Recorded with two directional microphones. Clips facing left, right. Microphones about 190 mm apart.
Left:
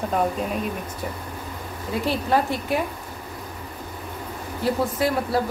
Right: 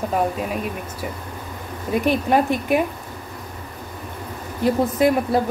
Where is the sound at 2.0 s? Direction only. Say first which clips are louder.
Right 3 dB; 15° right (ahead or behind).